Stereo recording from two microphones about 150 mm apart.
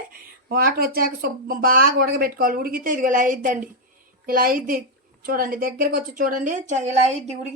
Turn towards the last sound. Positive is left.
turn(degrees=-50)  # may be behind; listen again after turning